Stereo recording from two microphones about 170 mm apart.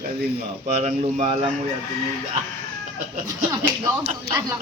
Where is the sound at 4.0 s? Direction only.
40° right (ahead or behind).